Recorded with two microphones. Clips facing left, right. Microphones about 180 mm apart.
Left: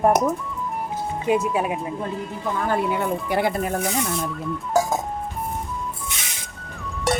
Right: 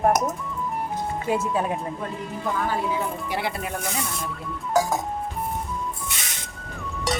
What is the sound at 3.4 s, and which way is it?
Speech, 45° left (ahead or behind).